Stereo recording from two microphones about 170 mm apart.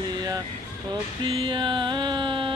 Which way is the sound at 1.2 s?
30° right (ahead or behind).